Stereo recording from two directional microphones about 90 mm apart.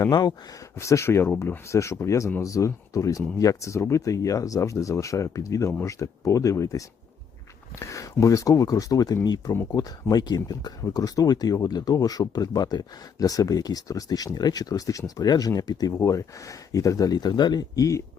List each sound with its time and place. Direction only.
0.1 s speech: 55° left (ahead or behind)
0.8 s speech: 30° left (ahead or behind); by 16.0 s 50° left (ahead or behind)
16.0 s speech: 35° left (ahead or behind)